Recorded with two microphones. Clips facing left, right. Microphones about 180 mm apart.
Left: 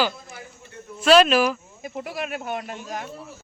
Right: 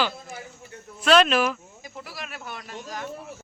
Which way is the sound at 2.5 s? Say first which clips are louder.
Left 5 dB; 50° left (ahead or behind).